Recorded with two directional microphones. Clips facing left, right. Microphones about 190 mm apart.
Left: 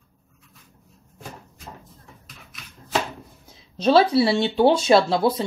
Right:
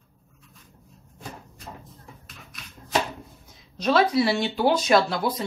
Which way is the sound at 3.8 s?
30° left (ahead or behind).